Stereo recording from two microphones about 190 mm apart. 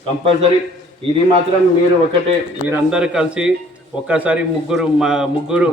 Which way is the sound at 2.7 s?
5° right (ahead or behind).